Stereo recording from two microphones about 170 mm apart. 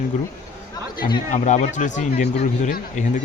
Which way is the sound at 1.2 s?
45° left (ahead or behind).